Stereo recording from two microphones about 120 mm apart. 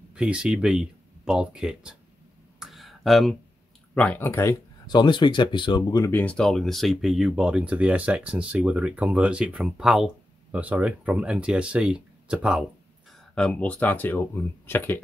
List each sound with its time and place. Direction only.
0.1 s speech: 10° right (ahead or behind)
2.6 s a sound: centre (ahead or behind)
3.9 s speech: 15° left (ahead or behind)
4.9 s speech: 40° left (ahead or behind)
6.0 s speech: 15° left (ahead or behind); by 12.6 s 10° right (ahead or behind)
13.3 s speech: 10° left (ahead or behind)